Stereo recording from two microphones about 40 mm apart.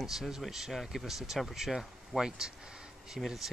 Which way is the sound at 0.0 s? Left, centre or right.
Centre.